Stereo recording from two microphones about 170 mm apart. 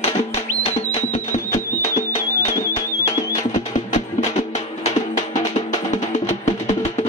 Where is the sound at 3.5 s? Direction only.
45° left (ahead or behind).